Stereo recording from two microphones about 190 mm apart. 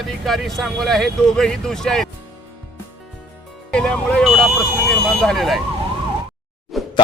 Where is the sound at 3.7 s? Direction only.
5° left (ahead or behind).